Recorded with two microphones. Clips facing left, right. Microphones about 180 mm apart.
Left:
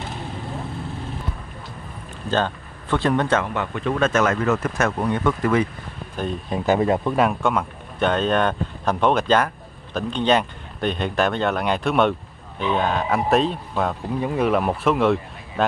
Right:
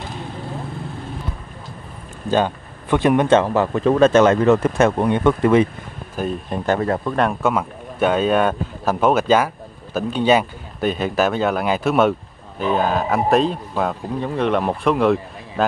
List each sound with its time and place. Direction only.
2.3 s speech: 15° right (ahead or behind)
3.3 s speech: 35° right (ahead or behind)
6.1 s speech: centre (ahead or behind)
6.8 s speech: 15° left (ahead or behind)
7.2 s speech: centre (ahead or behind)